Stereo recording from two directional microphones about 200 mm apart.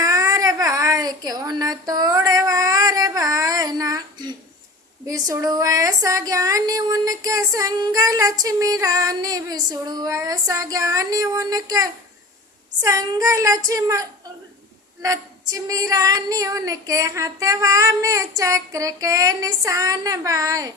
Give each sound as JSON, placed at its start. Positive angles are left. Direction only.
{"t": 0.0, "sound": "child singing", "side_deg": -15}
{"t": 5.0, "sound": "speech", "side_deg": -15}